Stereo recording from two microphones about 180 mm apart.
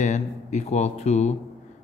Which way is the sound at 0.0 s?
40° left (ahead or behind).